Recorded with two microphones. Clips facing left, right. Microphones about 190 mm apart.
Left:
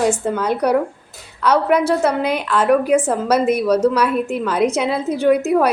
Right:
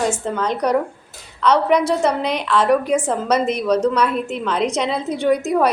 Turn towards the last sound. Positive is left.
turn(degrees=5)  # may be behind; listen again after turning